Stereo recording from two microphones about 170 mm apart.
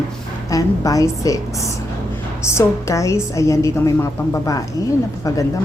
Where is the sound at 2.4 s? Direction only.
15° left (ahead or behind).